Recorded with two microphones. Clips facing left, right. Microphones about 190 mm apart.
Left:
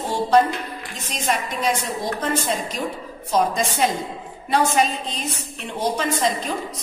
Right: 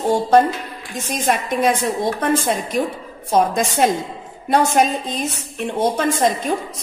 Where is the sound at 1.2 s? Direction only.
55° right (ahead or behind).